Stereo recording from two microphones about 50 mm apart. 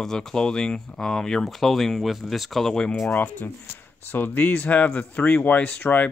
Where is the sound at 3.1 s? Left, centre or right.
Left.